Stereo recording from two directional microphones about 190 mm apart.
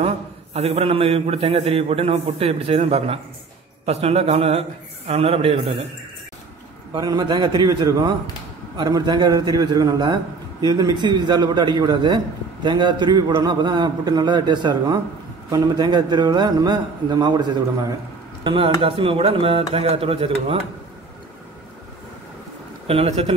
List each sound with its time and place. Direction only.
0.0 s a man's voice: 30° right (ahead or behind)
6.9 s a man's voice: 20° right (ahead or behind)
22.8 s a man's voice: 35° right (ahead or behind)